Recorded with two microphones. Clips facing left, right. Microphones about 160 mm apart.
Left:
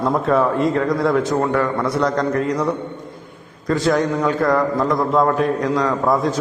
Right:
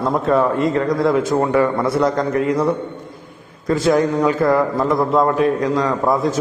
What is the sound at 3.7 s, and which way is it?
A man's voice, 5° right (ahead or behind).